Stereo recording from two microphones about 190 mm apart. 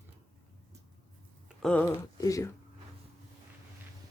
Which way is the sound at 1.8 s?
15° left (ahead or behind).